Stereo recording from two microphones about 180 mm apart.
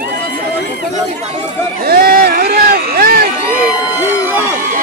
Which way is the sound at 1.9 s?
55° right (ahead or behind).